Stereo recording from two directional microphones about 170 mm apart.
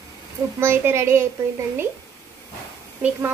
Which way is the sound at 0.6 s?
15° right (ahead or behind).